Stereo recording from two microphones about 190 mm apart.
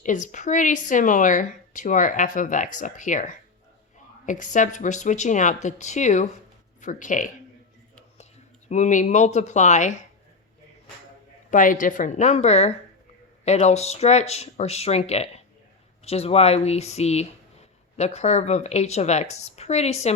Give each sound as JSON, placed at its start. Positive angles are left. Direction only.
{"t": 0.0, "sound": "a woman's voice", "side_deg": 40}
{"t": 8.7, "sound": "speech", "side_deg": 40}
{"t": 11.5, "sound": "speech", "side_deg": 45}